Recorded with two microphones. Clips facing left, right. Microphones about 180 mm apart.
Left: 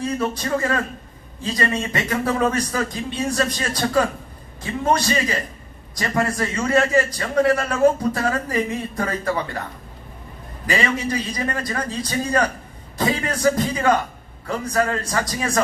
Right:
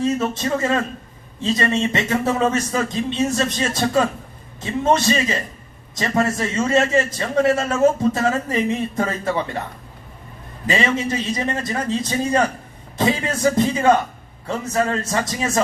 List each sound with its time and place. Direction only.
0.0 s a man's voice: 25° right (ahead or behind)
10.7 s a man's voice: 25° right (ahead or behind)